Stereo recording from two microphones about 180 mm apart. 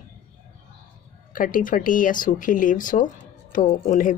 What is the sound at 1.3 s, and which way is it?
Speech, 50° left (ahead or behind).